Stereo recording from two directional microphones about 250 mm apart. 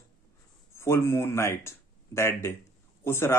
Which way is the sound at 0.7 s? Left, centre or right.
Centre.